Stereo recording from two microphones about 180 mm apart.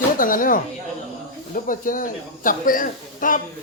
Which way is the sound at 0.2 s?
50° left (ahead or behind).